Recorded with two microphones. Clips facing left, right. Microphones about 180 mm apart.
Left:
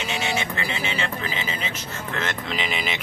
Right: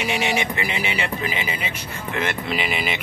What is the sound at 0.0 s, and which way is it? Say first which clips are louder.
Speech: right 4 dB; 15° right (ahead or behind).